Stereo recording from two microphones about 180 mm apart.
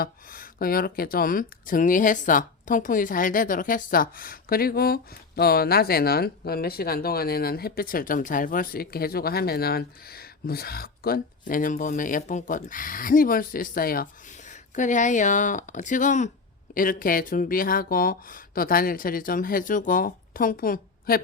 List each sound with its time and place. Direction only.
0.0 s speech: 55° left (ahead or behind)